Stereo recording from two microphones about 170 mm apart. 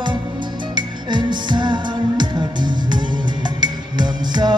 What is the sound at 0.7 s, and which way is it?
Music, 25° right (ahead or behind).